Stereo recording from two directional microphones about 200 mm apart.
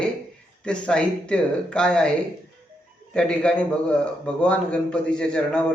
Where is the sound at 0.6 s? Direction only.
5° left (ahead or behind).